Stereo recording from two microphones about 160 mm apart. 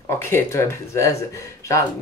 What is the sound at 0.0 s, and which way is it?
Speech, 15° left (ahead or behind).